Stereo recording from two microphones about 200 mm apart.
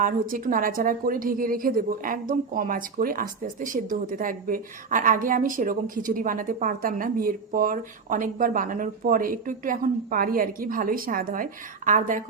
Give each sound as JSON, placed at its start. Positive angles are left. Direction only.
{"t": 0.0, "sound": "a woman's voice", "side_deg": -45}